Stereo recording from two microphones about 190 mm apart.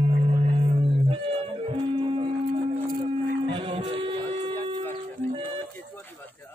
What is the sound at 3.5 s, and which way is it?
Music, 30° right (ahead or behind).